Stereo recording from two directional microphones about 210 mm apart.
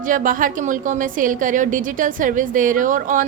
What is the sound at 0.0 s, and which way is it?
A woman's voice, 40° right (ahead or behind).